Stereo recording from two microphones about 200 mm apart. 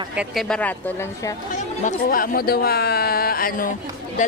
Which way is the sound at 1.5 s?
40° left (ahead or behind).